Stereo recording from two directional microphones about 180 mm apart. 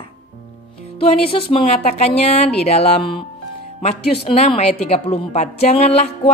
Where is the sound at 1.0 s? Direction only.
35° left (ahead or behind).